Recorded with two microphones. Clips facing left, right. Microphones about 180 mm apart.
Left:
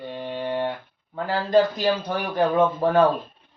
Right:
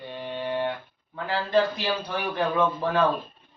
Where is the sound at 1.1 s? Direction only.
40° left (ahead or behind).